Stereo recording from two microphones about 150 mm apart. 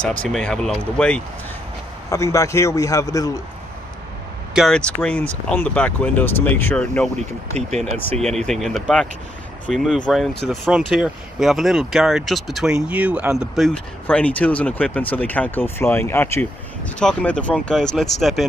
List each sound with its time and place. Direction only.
0.0 s speech: 10° left (ahead or behind)
2.0 s a man's voice: 20° left (ahead or behind)
4.6 s speech: 5° left (ahead or behind)